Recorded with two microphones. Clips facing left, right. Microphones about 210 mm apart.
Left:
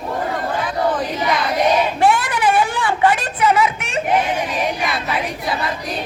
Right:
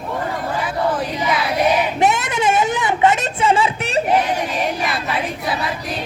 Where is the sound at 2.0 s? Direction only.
20° right (ahead or behind).